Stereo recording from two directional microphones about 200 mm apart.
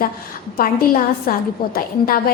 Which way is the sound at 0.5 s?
45° left (ahead or behind).